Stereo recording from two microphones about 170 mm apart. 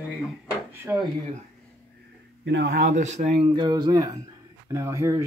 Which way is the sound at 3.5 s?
25° right (ahead or behind).